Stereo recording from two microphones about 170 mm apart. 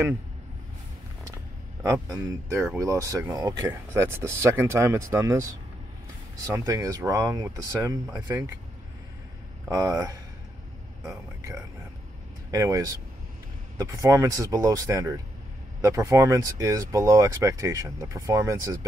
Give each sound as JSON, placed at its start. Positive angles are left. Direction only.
{"t": 1.8, "sound": "speech", "side_deg": -20}
{"t": 9.7, "sound": "speech", "side_deg": -20}